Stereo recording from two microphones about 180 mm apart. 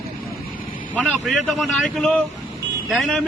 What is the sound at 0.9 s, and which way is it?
Speech, 5° left (ahead or behind).